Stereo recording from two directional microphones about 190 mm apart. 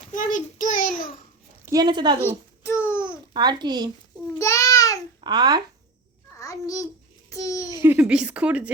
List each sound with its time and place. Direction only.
0.1 s a child's voice: 45° left (ahead or behind)
1.6 s speech: 20° right (ahead or behind)
2.6 s a sound: 15° left (ahead or behind)
3.3 s speech: 25° right (ahead or behind)
4.4 s babbling: 15° left (ahead or behind)
5.2 s a child's voice: 25° right (ahead or behind)
6.3 s babbling: 15° left (ahead or behind)
7.8 s a woman's voice: 10° right (ahead or behind)